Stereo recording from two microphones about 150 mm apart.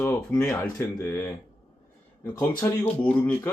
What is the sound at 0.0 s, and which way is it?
Speech, 15° left (ahead or behind).